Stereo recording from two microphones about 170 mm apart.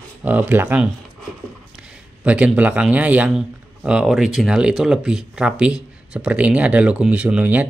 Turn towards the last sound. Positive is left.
turn(degrees=-10)  # may be behind; listen again after turning